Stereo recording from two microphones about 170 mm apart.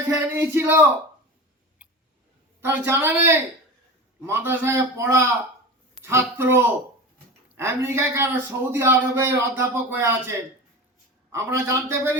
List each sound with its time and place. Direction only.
0.1 s a man's voice: 15° right (ahead or behind)
1.8 s a sound: 10° right (ahead or behind)
2.6 s a man's voice: 15° right (ahead or behind)